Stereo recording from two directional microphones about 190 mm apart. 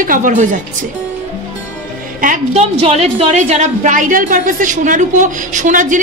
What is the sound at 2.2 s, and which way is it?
A woman's voice, 35° right (ahead or behind).